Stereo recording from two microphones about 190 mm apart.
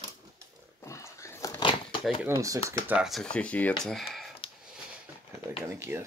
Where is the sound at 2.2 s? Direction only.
15° right (ahead or behind).